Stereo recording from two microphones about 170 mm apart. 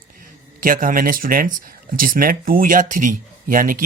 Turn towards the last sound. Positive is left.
turn(degrees=-55)  # may be behind; listen again after turning